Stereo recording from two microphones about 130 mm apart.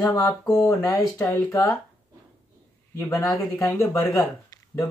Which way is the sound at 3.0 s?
25° left (ahead or behind).